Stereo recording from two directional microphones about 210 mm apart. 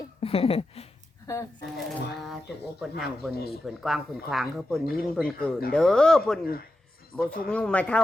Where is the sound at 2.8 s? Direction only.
Centre (ahead or behind).